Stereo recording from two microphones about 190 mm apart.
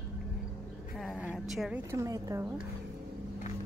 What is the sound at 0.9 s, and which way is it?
Speech, 5° left (ahead or behind).